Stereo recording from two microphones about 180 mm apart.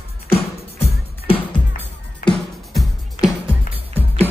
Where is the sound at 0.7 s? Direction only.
30° left (ahead or behind).